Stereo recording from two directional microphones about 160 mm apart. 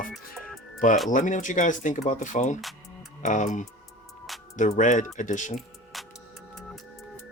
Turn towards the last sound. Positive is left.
turn(degrees=50)  # may be behind; listen again after turning